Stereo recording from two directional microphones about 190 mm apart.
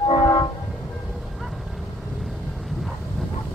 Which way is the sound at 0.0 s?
25° left (ahead or behind).